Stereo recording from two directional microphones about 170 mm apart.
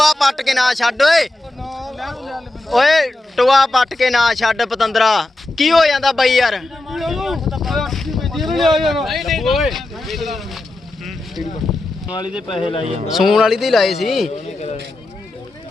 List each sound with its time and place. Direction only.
0.0 s speech: centre (ahead or behind)
12.5 s a man's voice: 30° left (ahead or behind)
13.1 s a man's voice: centre (ahead or behind)
14.3 s a man's voice: 40° left (ahead or behind)